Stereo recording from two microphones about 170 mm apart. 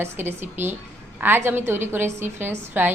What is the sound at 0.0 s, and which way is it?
A woman's voice, 15° right (ahead or behind).